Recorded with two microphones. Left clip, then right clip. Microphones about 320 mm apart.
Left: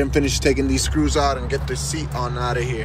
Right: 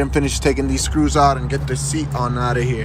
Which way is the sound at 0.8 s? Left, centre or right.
Centre.